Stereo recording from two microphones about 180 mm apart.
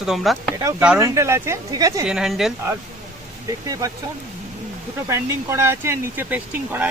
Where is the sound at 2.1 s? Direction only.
5° right (ahead or behind).